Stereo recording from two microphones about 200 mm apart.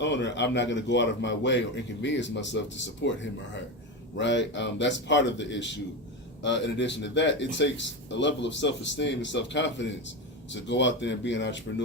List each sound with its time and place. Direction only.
0.0 s a man's voice: 60° left (ahead or behind)